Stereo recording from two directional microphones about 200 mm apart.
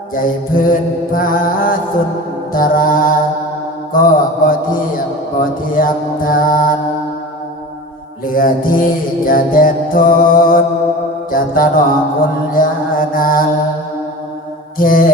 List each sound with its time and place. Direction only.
0.1 s mantra: 45° left (ahead or behind)
8.2 s mantra: 45° left (ahead or behind)
14.8 s mantra: 45° left (ahead or behind)